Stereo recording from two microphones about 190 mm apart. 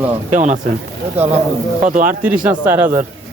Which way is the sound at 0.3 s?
40° right (ahead or behind).